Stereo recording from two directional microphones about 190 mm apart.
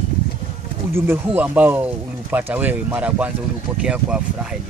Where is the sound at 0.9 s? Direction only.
10° right (ahead or behind).